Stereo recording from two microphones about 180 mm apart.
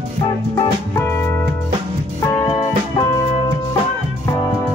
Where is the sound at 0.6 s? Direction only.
15° left (ahead or behind).